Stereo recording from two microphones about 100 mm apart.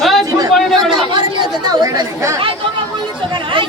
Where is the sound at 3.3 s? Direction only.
50° right (ahead or behind).